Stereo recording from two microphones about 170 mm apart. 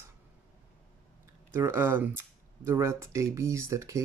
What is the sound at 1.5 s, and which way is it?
Speech, 15° right (ahead or behind).